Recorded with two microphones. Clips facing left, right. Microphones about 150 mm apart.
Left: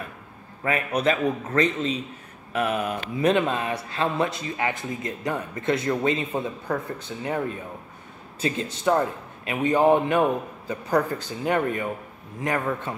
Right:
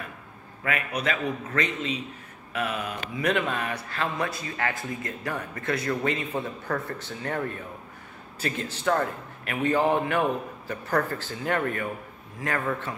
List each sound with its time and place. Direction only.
0.7 s a man's voice: 35° left (ahead or behind)
2.5 s mantra: 45° left (ahead or behind)
3.2 s a man's voice: 25° left (ahead or behind)